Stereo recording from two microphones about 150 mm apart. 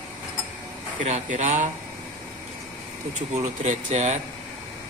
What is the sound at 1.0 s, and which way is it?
Speech, 55° right (ahead or behind).